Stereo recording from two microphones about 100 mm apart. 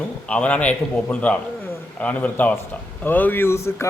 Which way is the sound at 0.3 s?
10° left (ahead or behind).